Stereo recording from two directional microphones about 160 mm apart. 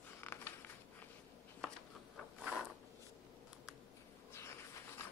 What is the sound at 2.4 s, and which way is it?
Mechanisms, 5° right (ahead or behind).